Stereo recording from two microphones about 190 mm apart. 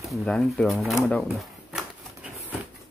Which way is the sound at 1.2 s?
Centre (ahead or behind).